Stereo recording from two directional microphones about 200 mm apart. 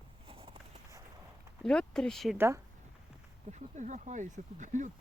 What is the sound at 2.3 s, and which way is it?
Speech, 10° right (ahead or behind).